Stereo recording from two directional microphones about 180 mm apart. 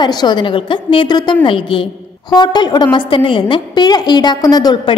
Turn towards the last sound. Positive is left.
turn(degrees=20)  # may be behind; listen again after turning